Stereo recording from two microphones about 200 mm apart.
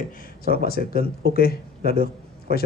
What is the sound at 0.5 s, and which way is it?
Speech, 50° left (ahead or behind).